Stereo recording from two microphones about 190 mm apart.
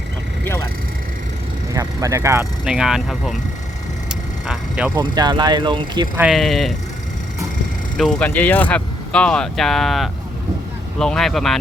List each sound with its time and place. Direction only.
1.7 s speech: 15° right (ahead or behind)
4.1 s vehicle: 5° right (ahead or behind)
4.9 s speech: 20° right (ahead or behind)
6.1 s speech: centre (ahead or behind)
7.9 s speech: 5° left (ahead or behind)